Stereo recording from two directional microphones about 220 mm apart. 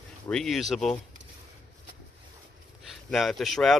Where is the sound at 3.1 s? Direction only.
Centre (ahead or behind).